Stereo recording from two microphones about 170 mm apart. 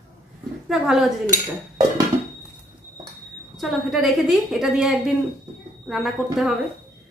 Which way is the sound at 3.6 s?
Centre (ahead or behind).